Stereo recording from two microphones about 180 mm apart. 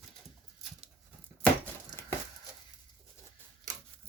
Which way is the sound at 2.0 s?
15° left (ahead or behind).